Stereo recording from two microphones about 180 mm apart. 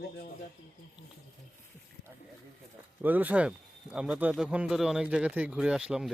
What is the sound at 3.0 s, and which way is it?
Speech, 10° right (ahead or behind).